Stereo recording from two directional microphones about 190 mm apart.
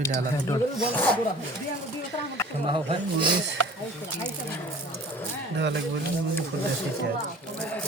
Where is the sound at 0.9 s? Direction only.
10° left (ahead or behind).